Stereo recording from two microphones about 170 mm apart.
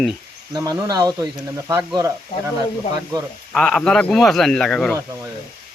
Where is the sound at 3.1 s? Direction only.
25° right (ahead or behind).